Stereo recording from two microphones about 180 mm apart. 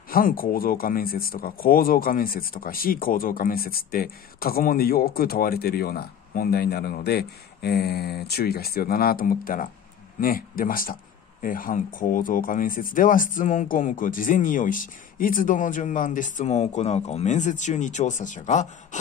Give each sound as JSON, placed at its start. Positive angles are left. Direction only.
{"t": 0.1, "sound": "speech", "side_deg": 50}